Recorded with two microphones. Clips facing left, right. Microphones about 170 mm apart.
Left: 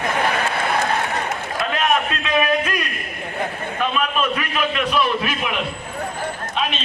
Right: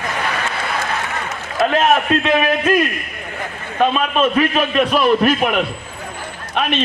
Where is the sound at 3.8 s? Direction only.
30° right (ahead or behind); by 6.7 s 60° right (ahead or behind).